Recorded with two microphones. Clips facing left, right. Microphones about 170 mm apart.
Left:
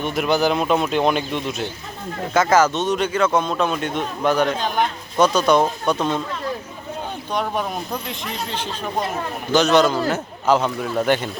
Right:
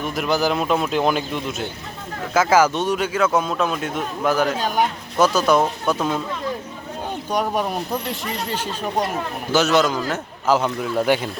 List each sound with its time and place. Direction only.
0.0 s a man's voice: centre (ahead or behind)
7.3 s a man's voice: 10° right (ahead or behind)